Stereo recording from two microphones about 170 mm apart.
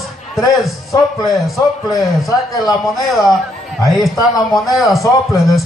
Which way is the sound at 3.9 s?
Centre (ahead or behind).